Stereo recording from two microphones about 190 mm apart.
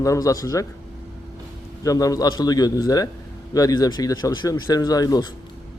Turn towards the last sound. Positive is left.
turn(degrees=20)  # may be behind; listen again after turning